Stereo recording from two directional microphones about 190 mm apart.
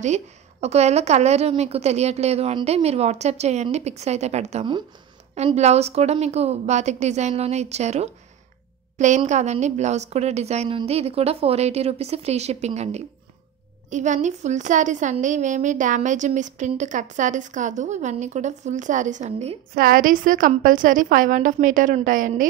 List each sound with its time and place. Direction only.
0.0 s a woman's voice: 35° right (ahead or behind)